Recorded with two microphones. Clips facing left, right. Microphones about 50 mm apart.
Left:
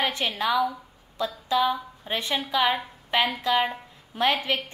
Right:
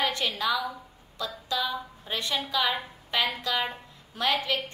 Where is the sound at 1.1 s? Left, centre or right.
Left.